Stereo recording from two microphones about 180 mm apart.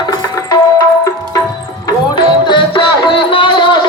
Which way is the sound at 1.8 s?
25° left (ahead or behind).